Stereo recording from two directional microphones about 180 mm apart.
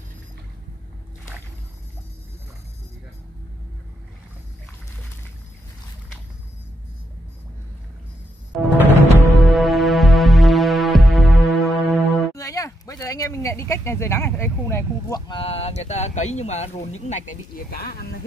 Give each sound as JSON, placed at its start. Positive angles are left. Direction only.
{"t": 8.5, "sound": "music", "side_deg": 0}
{"t": 12.4, "sound": "speech", "side_deg": 20}